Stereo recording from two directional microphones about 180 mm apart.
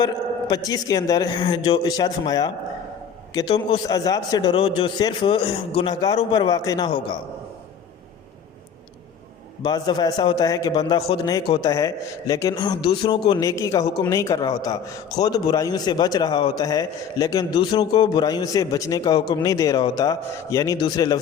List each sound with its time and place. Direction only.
0.0 s a man's voice: 20° left (ahead or behind)
9.6 s a man's voice: 25° left (ahead or behind)